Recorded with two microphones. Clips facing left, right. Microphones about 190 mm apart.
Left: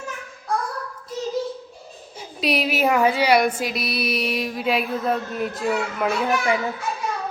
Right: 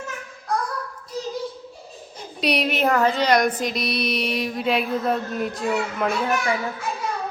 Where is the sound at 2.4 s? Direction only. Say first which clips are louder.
Even; centre (ahead or behind).